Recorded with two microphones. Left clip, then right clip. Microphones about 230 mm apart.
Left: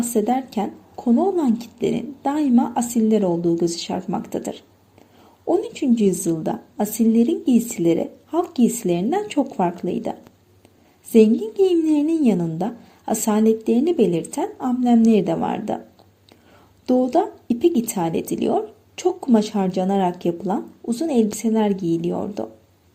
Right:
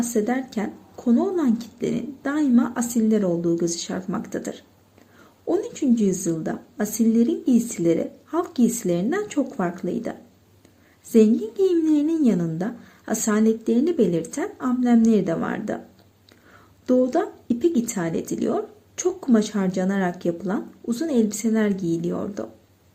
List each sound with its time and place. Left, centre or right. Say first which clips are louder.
0.1 s a woman's voice: left 3 dB; centre
4.0 s speech: left 3 dB; centre
4.3 s a woman's voice: left 3 dB; centre
5.7 s a woman's voice: left 3 dB; centre
11.2 s a woman's voice: left 3 dB; centre
16.8 s a woman's voice: left 2 dB; centre